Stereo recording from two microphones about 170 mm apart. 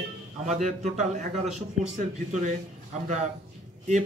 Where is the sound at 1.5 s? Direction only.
45° right (ahead or behind).